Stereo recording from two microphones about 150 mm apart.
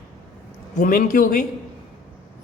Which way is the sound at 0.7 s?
60° left (ahead or behind).